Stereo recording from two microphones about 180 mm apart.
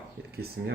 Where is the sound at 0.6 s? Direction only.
70° right (ahead or behind).